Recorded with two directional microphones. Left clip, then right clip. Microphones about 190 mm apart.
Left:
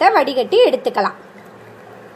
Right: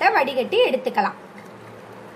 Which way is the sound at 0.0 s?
35° left (ahead or behind).